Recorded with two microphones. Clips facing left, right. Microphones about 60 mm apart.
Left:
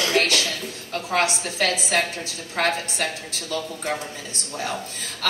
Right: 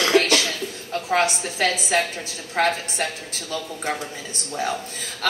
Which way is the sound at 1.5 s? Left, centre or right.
Right.